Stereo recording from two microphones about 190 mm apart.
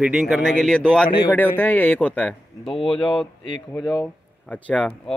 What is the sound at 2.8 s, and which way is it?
Speech, 30° left (ahead or behind).